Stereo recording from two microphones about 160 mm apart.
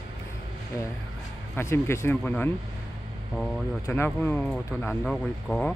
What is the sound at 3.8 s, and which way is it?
Speech, 15° left (ahead or behind).